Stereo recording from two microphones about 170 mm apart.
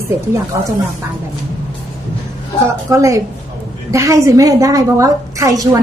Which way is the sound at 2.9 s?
20° right (ahead or behind).